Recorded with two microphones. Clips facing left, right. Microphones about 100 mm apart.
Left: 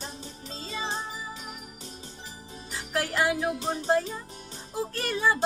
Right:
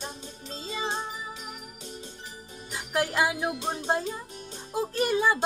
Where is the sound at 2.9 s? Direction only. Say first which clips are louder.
Even; 20° right (ahead or behind).